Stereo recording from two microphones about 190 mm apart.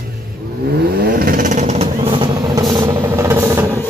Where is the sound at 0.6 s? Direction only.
55° right (ahead or behind).